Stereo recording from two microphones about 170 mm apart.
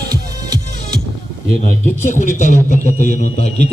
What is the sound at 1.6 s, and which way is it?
A man's voice, 50° left (ahead or behind).